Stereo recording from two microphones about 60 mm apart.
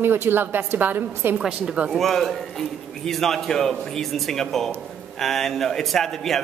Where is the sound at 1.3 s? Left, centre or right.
Centre.